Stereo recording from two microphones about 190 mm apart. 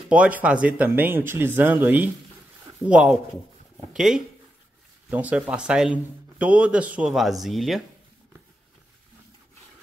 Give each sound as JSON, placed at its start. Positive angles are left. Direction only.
{"t": 0.1, "sound": "speech", "side_deg": -5}